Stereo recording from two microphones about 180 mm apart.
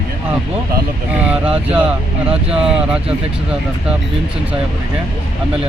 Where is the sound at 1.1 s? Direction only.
5° right (ahead or behind).